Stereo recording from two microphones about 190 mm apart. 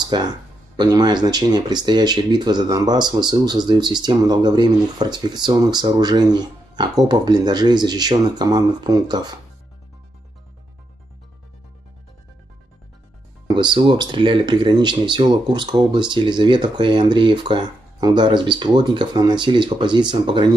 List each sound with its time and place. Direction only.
0.0 s speech: 20° right (ahead or behind)
13.5 s speech: 25° right (ahead or behind)